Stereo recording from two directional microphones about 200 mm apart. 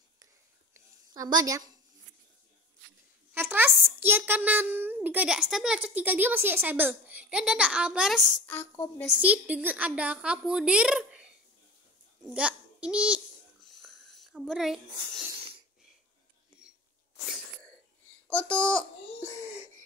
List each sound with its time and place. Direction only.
0.7 s a sound: 20° right (ahead or behind)
3.3 s a child's voice: 10° right (ahead or behind)
8.5 s a child's voice: 10° left (ahead or behind)
9.0 s a woman's voice: 5° right (ahead or behind)
12.4 s babbling: 5° right (ahead or behind)
18.3 s a child's voice: 5° left (ahead or behind)